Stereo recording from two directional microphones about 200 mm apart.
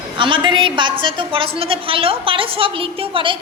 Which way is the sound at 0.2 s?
25° right (ahead or behind).